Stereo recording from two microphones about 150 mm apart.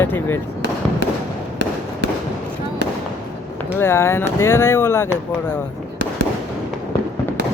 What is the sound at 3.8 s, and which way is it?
Speech, 15° left (ahead or behind).